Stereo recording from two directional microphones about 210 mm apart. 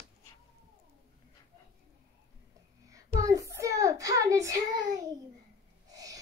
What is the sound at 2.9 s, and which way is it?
Child singing, 15° right (ahead or behind).